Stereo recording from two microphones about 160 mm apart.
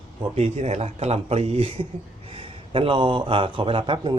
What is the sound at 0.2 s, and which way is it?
Speech, 40° right (ahead or behind).